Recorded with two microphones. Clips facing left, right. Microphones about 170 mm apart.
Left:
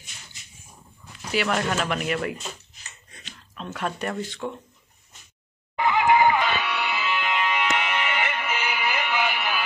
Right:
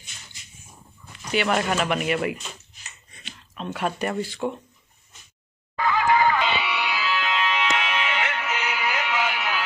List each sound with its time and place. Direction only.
1.3 s speech: 5° right (ahead or behind)
5.8 s music: 20° left (ahead or behind)
6.4 s music: 10° right (ahead or behind); by 9.6 s 5° left (ahead or behind)